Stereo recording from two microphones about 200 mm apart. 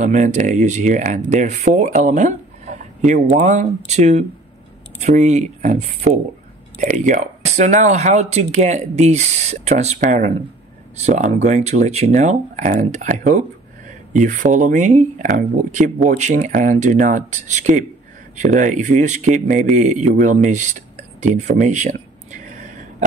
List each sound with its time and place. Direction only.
0.0 s speech: 35° right (ahead or behind)